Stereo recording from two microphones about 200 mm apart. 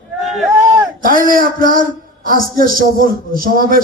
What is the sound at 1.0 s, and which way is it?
A man's voice, 45° right (ahead or behind).